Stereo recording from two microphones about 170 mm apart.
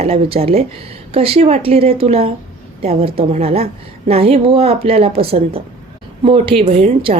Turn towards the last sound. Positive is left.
turn(degrees=-35)  # may be behind; listen again after turning